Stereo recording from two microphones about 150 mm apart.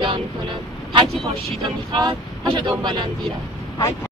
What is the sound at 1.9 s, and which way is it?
Speech, 35° right (ahead or behind).